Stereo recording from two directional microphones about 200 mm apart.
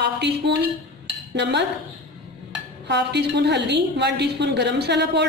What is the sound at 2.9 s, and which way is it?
A woman's voice, 60° right (ahead or behind).